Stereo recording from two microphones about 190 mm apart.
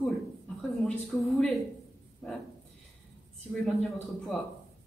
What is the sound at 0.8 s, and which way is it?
Speech, centre (ahead or behind).